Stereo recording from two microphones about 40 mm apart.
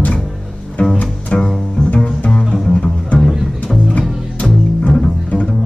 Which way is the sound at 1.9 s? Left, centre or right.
Left.